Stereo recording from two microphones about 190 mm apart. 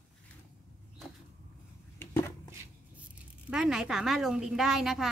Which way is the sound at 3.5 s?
5° right (ahead or behind).